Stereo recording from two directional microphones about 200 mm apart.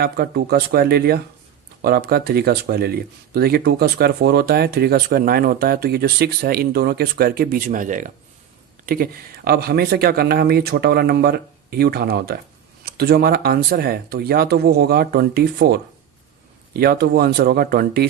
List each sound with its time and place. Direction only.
0.0 s speech: 50° right (ahead or behind)